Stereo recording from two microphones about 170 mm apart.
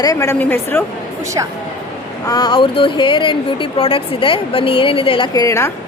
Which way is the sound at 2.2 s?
25° left (ahead or behind).